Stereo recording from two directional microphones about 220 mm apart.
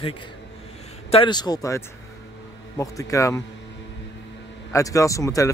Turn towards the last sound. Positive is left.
turn(degrees=15)  # may be behind; listen again after turning